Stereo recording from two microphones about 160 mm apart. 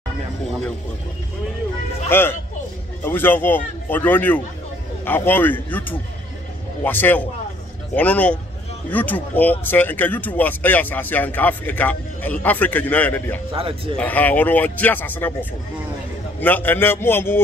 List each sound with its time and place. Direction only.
2.0 s speech: 15° left (ahead or behind)
13.5 s speech: 35° right (ahead or behind)
13.9 s speech: 10° left (ahead or behind)
16.3 s speech: 10° left (ahead or behind)